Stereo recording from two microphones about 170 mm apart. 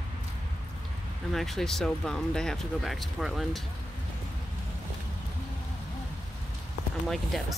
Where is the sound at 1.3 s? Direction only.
Centre (ahead or behind).